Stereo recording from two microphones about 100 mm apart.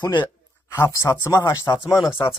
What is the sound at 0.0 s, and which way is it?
Speech, 50° left (ahead or behind).